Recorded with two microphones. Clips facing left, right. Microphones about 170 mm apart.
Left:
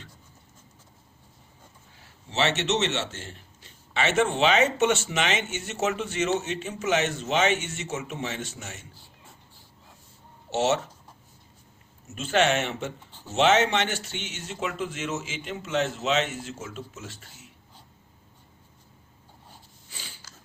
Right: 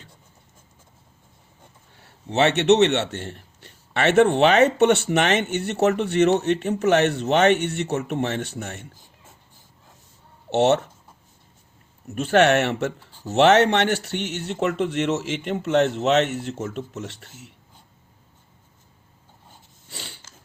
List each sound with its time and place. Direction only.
2.3 s a man's voice: 60° right (ahead or behind)
10.5 s a man's voice: 60° right (ahead or behind)
12.0 s a man's voice: 60° right (ahead or behind)
19.9 s a sound: 70° right (ahead or behind)